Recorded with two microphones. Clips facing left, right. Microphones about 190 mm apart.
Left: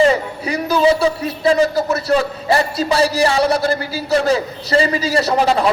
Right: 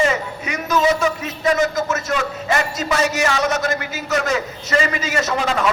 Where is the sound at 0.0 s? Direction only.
35° left (ahead or behind).